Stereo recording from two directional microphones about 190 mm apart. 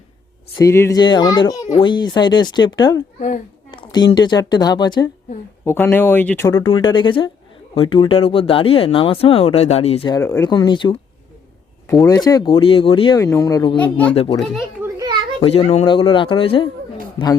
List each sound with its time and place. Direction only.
0.6 s speech: 15° left (ahead or behind)
1.6 s a child's voice: 30° left (ahead or behind)
3.2 s speech: 40° left (ahead or behind)
3.7 s a woman's voice: 25° left (ahead or behind)
5.6 s speech: 10° left (ahead or behind); by 10.2 s 30° left (ahead or behind)
10.2 s speech: 15° left (ahead or behind)
12.0 s speech: 20° left (ahead or behind)
13.1 s speech: 15° left (ahead or behind)
13.8 s speech: 5° left (ahead or behind)
14.8 s children playing: 15° right (ahead or behind)
15.4 s speech: 30° left (ahead or behind)